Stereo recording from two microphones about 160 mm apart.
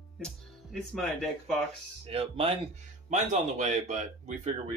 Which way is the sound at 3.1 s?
50° right (ahead or behind).